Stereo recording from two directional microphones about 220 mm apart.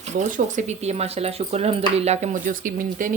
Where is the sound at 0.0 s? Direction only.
35° right (ahead or behind).